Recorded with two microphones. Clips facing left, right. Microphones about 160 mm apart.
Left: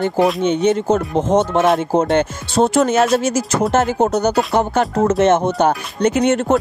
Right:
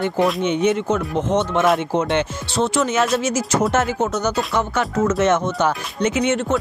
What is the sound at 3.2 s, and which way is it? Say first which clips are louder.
Speech: left 2 dB; 35° left (ahead or behind).